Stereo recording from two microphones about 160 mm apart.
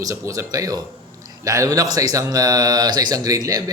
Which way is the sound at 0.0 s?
20° right (ahead or behind).